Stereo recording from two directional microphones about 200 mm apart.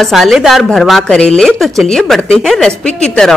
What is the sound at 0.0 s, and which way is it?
Speech, centre (ahead or behind).